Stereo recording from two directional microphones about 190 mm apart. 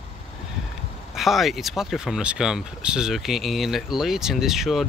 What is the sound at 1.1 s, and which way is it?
Speech, centre (ahead or behind).